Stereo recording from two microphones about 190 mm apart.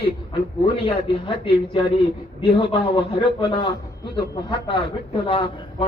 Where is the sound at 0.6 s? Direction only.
30° left (ahead or behind).